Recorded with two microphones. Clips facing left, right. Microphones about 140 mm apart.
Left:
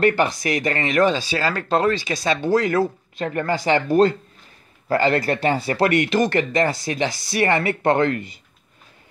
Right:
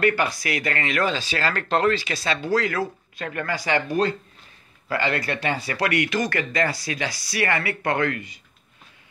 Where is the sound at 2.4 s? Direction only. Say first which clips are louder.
Left 5 dB; 25° left (ahead or behind).